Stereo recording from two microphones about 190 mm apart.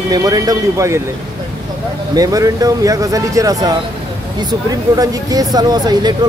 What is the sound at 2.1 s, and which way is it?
Speech, 20° right (ahead or behind).